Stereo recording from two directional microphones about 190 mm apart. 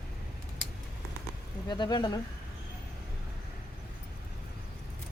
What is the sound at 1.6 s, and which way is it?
Speech, 20° left (ahead or behind).